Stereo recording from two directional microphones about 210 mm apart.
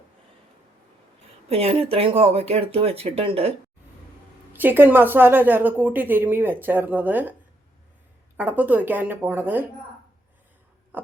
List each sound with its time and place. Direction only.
1.5 s speech: 30° right (ahead or behind)
4.5 s a woman's voice: 10° right (ahead or behind)
8.4 s a woman's voice: 10° right (ahead or behind)
10.9 s a sound: 10° right (ahead or behind)